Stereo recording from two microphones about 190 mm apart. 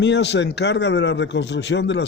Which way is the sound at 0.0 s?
65° left (ahead or behind).